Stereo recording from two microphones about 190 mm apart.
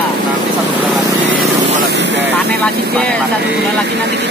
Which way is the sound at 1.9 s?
65° right (ahead or behind).